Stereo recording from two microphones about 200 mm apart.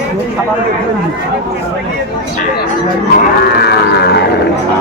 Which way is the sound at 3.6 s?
55° left (ahead or behind).